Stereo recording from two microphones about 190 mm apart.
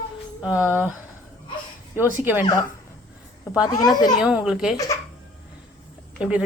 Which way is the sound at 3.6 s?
20° left (ahead or behind).